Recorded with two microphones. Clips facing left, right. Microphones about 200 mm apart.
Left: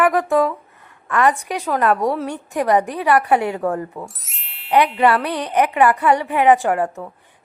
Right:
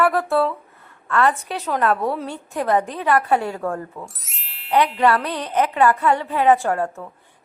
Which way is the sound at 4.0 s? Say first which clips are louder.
Left 3 dB; centre (ahead or behind).